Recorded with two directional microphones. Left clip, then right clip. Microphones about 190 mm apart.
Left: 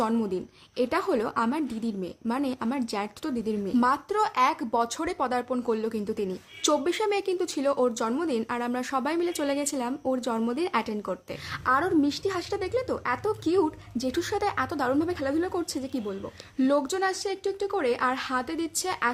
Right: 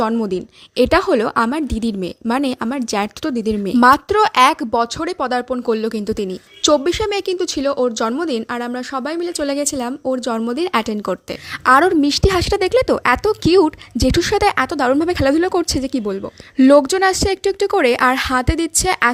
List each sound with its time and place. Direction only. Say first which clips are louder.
0.0 s a woman's voice: right 9 dB; 35° right (ahead or behind)